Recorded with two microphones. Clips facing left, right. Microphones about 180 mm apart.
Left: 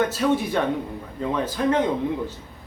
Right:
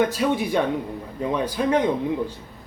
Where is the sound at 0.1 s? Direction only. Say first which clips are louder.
Even; 15° right (ahead or behind).